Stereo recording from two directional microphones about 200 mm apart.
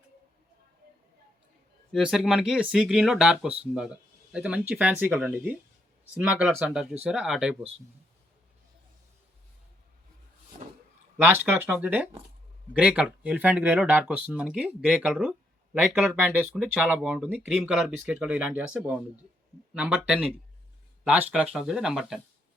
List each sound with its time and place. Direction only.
1.9 s speech: centre (ahead or behind)
10.5 s a sound: 35° right (ahead or behind)
11.2 s speech: 10° right (ahead or behind)